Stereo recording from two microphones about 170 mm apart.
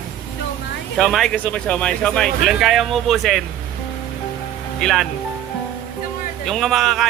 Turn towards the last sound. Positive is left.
turn(degrees=0)  # may be behind; listen again after turning